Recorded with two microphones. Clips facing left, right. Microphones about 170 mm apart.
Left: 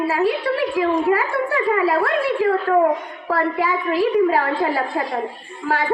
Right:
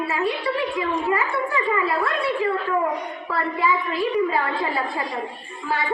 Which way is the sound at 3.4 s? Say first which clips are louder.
Left 2 dB; 65° left (ahead or behind).